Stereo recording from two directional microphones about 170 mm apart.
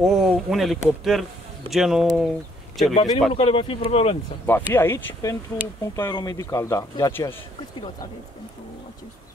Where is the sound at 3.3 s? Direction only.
35° left (ahead or behind).